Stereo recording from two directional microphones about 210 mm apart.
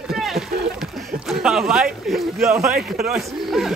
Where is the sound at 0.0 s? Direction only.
Centre (ahead or behind).